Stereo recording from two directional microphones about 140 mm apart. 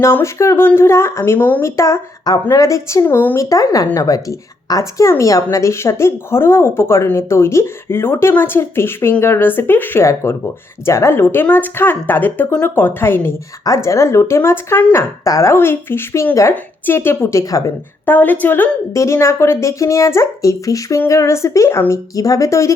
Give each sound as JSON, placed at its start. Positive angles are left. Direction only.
{"t": 0.0, "sound": "speech", "side_deg": 20}